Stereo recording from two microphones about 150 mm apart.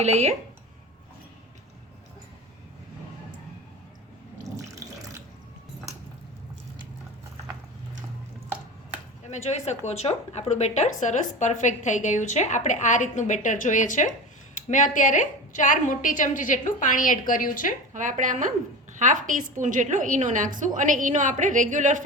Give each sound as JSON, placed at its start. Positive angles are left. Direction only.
{"t": 0.0, "sound": "speech", "side_deg": -45}
{"t": 4.5, "sound": "water", "side_deg": -20}
{"t": 9.3, "sound": "a woman's voice", "side_deg": 50}
{"t": 17.9, "sound": "a woman's voice", "side_deg": -60}